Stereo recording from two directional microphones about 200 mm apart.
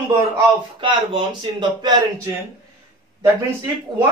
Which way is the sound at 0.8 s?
25° right (ahead or behind).